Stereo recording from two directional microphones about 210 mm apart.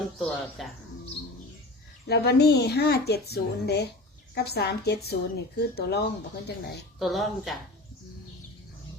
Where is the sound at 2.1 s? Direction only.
50° left (ahead or behind).